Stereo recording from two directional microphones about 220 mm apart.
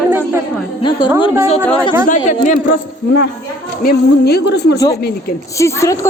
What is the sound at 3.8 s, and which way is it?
Speech, 45° left (ahead or behind).